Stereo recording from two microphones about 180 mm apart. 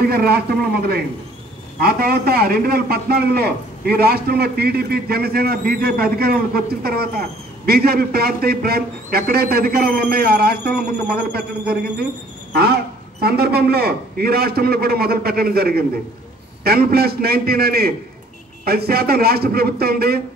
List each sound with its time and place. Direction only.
0.0 s a man's voice: 60° right (ahead or behind)
1.8 s a man's voice: 60° right (ahead or behind)
13.2 s a man's voice: 60° right (ahead or behind)